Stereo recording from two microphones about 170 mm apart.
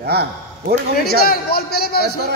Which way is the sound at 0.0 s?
70° right (ahead or behind).